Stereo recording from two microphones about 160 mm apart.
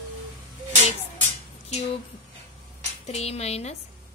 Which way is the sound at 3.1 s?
40° left (ahead or behind).